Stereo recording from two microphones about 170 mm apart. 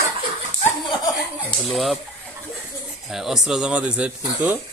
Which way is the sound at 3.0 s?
Centre (ahead or behind).